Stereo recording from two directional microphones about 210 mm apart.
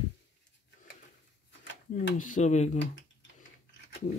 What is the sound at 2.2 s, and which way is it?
Speech, 35° left (ahead or behind).